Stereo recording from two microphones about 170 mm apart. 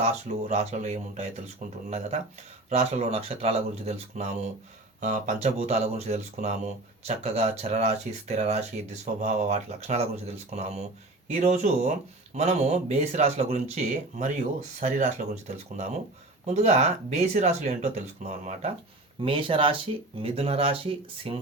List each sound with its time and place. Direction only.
0.0 s speech: 40° right (ahead or behind)
2.6 s speech: 40° right (ahead or behind)
19.2 s speech: 30° right (ahead or behind)